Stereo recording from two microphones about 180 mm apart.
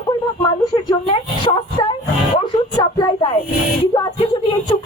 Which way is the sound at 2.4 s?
25° left (ahead or behind).